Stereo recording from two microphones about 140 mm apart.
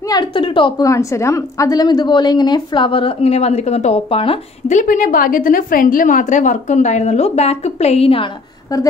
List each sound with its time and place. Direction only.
0.1 s a woman's voice: 35° left (ahead or behind)
0.8 s a woman's voice: 20° left (ahead or behind); by 4.7 s 40° left (ahead or behind)
4.7 s a woman's voice: 70° left (ahead or behind); by 8.3 s 45° left (ahead or behind)